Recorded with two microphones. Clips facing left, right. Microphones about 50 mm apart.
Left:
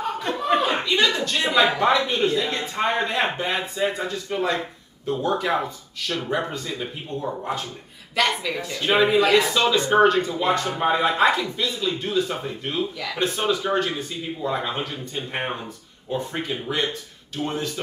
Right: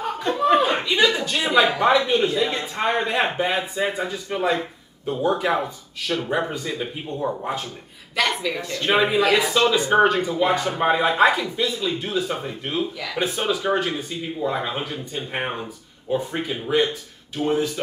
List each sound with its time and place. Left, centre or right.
0.0 s speech: centre